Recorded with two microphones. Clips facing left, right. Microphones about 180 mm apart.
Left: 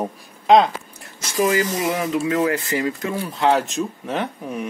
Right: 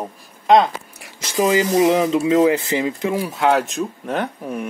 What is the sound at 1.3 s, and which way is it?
Speech, 20° right (ahead or behind).